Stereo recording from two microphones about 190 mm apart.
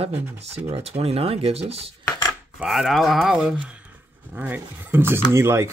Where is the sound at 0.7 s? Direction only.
35° right (ahead or behind).